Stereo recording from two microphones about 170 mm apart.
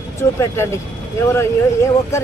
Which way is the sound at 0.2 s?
15° left (ahead or behind).